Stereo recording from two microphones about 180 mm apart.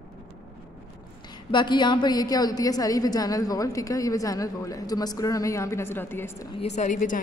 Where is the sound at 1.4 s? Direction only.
25° left (ahead or behind).